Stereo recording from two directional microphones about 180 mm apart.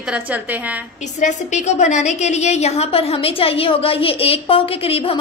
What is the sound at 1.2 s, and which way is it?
A woman's voice, 40° left (ahead or behind).